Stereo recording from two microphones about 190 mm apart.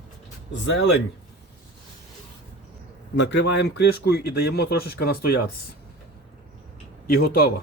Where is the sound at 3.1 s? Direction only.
65° left (ahead or behind).